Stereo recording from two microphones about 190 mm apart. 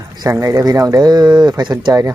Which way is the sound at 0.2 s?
15° right (ahead or behind).